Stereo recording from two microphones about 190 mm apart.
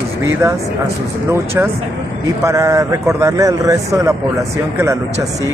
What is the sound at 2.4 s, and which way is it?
A man's voice, 15° right (ahead or behind).